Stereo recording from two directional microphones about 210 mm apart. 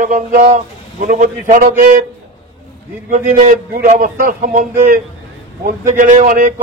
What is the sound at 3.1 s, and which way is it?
Speech, 35° right (ahead or behind).